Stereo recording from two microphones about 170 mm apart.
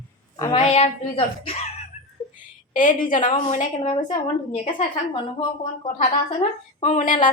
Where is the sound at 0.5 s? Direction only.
35° left (ahead or behind).